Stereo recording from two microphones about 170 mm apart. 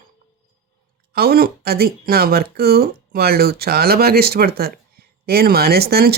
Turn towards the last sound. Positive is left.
turn(degrees=-65)  # may be behind; listen again after turning